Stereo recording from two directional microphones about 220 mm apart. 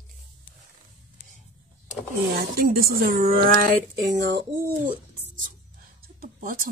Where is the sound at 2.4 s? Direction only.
40° right (ahead or behind).